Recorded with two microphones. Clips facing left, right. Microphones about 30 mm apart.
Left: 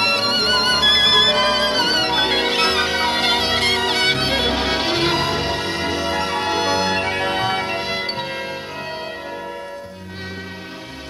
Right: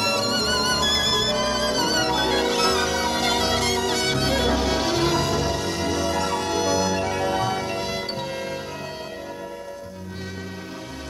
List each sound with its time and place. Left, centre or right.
0.0 s music: left